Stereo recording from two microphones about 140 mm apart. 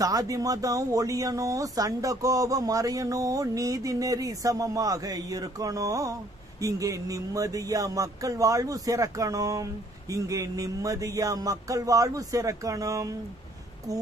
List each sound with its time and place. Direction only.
0.0 s speech: 25° right (ahead or behind)